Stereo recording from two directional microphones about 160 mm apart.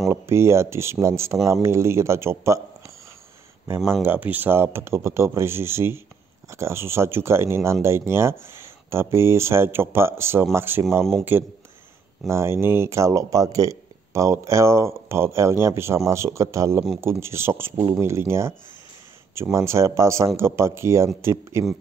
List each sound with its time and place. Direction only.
0.1 s speech: 15° right (ahead or behind)
3.6 s a man's voice: 15° right (ahead or behind)